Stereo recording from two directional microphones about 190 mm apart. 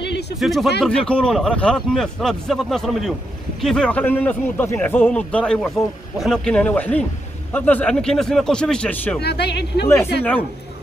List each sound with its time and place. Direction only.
0.4 s a man's voice: centre (ahead or behind)
9.2 s speech: 60° left (ahead or behind)